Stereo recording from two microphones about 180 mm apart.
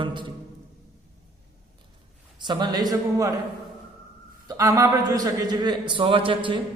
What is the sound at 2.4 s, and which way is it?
Speech, 25° right (ahead or behind).